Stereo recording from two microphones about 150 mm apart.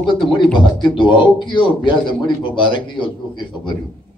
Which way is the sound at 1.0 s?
30° left (ahead or behind).